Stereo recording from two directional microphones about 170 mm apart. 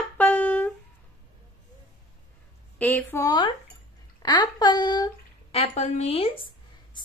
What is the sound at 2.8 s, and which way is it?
Speech, 10° left (ahead or behind).